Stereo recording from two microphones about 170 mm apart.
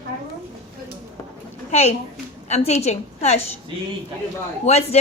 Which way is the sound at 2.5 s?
40° left (ahead or behind).